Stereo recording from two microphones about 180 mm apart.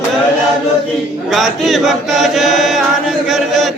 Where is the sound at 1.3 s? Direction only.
Centre (ahead or behind).